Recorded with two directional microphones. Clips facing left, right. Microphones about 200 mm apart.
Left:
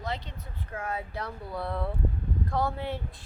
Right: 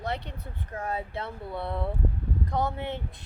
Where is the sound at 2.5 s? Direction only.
20° right (ahead or behind).